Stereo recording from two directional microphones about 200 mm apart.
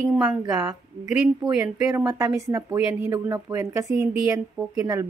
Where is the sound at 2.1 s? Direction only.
15° right (ahead or behind).